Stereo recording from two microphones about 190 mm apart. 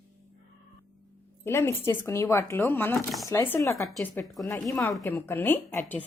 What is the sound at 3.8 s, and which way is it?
Speech, centre (ahead or behind).